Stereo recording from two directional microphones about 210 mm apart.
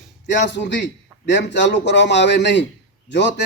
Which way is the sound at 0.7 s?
55° left (ahead or behind).